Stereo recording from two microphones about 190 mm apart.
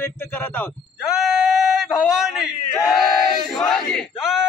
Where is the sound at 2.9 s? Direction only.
Centre (ahead or behind).